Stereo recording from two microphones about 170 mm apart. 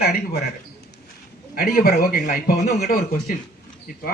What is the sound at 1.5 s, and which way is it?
Speech, 60° left (ahead or behind).